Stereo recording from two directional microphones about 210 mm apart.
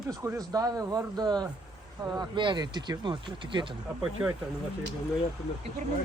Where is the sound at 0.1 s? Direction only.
15° right (ahead or behind).